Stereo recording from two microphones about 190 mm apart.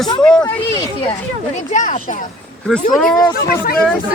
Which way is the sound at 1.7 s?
40° left (ahead or behind).